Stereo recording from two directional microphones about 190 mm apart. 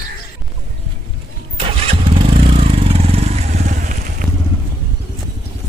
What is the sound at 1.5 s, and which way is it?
Vehicle, 30° right (ahead or behind).